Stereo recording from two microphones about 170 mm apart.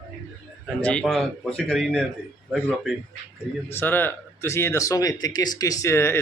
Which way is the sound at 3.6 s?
10° left (ahead or behind).